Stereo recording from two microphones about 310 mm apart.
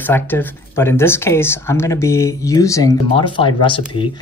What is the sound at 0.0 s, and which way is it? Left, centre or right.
Speech, centre.